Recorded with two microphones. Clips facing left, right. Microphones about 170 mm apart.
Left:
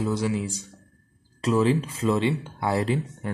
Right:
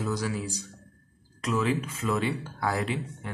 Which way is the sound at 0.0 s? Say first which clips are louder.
Left 5 dB; 25° left (ahead or behind).